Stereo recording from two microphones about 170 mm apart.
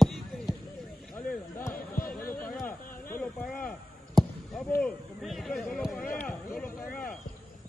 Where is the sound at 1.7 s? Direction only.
60° left (ahead or behind).